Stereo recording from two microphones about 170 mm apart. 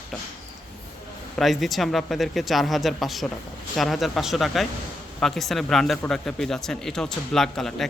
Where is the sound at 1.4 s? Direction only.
Centre (ahead or behind).